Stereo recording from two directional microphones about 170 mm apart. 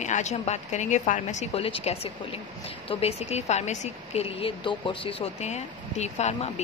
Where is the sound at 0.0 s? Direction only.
45° left (ahead or behind).